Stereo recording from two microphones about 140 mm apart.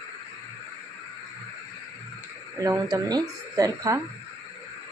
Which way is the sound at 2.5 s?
25° right (ahead or behind).